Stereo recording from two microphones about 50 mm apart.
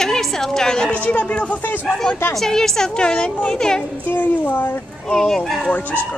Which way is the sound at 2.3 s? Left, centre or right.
Centre.